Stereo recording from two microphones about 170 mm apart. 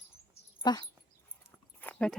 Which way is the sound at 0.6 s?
25° left (ahead or behind).